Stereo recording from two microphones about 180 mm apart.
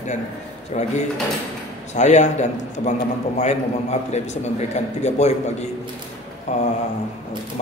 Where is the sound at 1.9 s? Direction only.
40° left (ahead or behind).